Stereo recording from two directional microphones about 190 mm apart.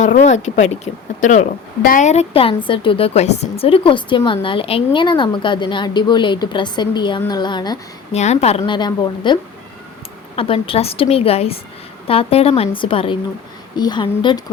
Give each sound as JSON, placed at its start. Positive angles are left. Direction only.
{"t": 0.0, "sound": "a woman's voice", "side_deg": 40}
{"t": 8.1, "sound": "a woman's voice", "side_deg": 35}